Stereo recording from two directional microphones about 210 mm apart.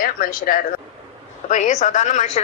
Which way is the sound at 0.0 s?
45° left (ahead or behind).